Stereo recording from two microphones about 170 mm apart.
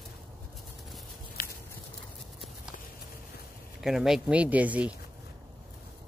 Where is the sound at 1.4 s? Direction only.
60° left (ahead or behind).